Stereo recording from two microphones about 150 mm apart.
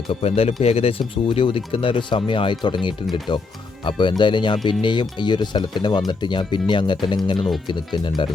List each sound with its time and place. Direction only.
0.1 s speech: 40° left (ahead or behind)
7.3 s speech: centre (ahead or behind)
7.7 s speech: 30° left (ahead or behind)